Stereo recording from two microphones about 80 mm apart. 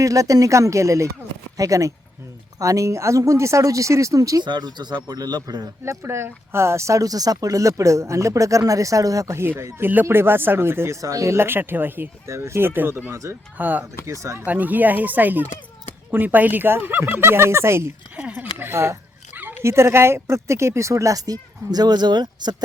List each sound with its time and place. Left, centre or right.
0.0 s speech: right
4.4 s a man's voice: right
5.8 s speech: right
11.0 s speech: right
13.1 s speech: right
13.6 s speech: right
14.1 s speech: right
14.4 s speech: right
18.2 s speech: centre
18.6 s speech: right
19.3 s a sound: right
19.6 s speech: right